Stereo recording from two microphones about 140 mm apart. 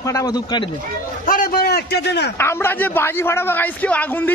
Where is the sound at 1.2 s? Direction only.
80° left.